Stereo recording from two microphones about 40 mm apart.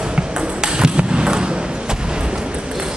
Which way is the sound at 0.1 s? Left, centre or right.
Centre.